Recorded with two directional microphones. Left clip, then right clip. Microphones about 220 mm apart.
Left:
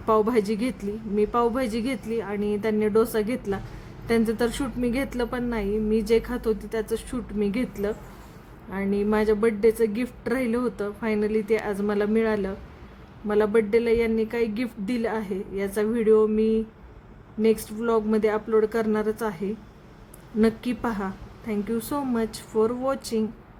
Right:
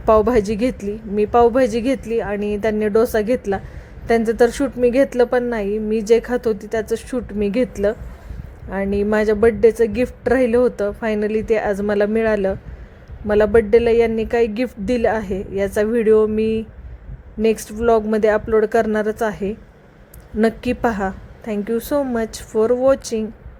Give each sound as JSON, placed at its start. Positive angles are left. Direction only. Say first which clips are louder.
{"t": 0.0, "sound": "a woman's voice", "louder": "right 7 dB", "side_deg": -20}